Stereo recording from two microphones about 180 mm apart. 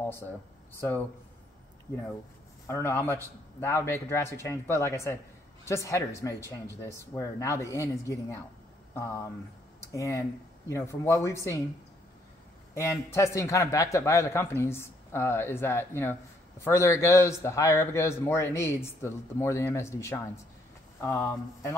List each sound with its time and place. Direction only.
0.7 s a man's voice: 10° left (ahead or behind)
2.6 s a man's voice: 15° left (ahead or behind)
9.8 s a man's voice: 15° left (ahead or behind)
12.7 s a man's voice: 15° left (ahead or behind)